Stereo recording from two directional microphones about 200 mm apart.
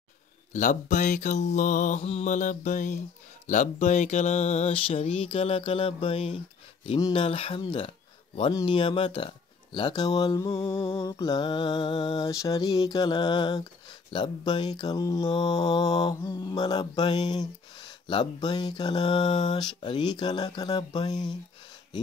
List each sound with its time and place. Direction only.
0.5 s mantra: 40° left (ahead or behind); by 21.3 s 20° left (ahead or behind)